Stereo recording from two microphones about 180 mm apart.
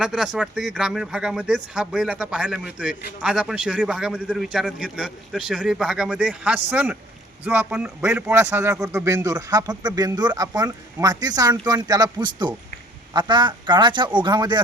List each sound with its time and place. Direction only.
0.0 s a man's voice: 5° right (ahead or behind); by 14.6 s 25° right (ahead or behind)